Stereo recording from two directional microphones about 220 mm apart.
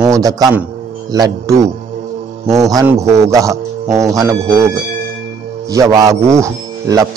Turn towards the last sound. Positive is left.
turn(degrees=-15)  # may be behind; listen again after turning